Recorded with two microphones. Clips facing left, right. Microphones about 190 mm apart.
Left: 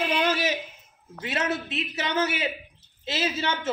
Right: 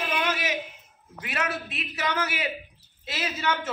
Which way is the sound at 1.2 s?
25° left (ahead or behind).